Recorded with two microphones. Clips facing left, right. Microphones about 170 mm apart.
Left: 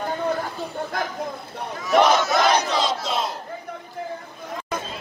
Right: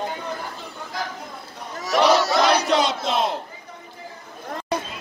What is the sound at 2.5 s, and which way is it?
Battle cry, 70° right (ahead or behind).